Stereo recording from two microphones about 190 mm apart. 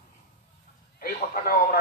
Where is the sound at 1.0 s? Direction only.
50° left (ahead or behind).